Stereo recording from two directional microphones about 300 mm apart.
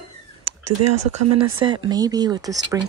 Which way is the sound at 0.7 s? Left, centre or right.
Right.